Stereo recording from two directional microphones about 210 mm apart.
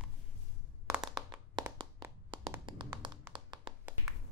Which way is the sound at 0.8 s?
15° right (ahead or behind).